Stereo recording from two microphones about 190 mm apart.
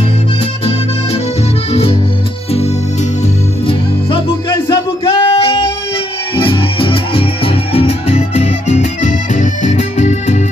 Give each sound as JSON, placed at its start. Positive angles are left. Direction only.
{"t": 1.7, "sound": "music", "side_deg": 30}
{"t": 4.6, "sound": "music", "side_deg": 30}